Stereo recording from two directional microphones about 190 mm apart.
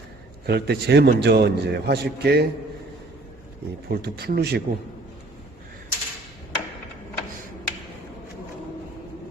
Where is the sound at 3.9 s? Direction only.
55° right (ahead or behind).